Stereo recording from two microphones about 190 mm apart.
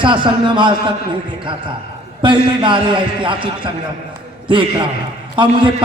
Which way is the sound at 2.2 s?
25° right (ahead or behind).